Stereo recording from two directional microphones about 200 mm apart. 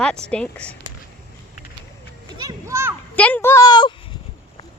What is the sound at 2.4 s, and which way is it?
Speech, 15° right (ahead or behind).